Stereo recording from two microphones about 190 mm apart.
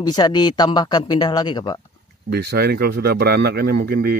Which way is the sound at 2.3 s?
60° right (ahead or behind).